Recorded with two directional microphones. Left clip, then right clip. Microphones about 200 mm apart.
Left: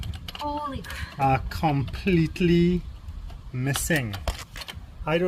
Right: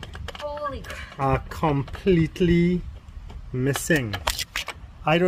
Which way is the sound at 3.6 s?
50° right (ahead or behind).